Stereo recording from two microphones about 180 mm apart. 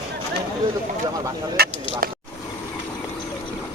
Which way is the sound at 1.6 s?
60° right (ahead or behind).